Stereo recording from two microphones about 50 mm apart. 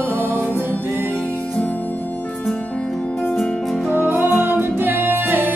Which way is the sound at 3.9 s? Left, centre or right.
Right.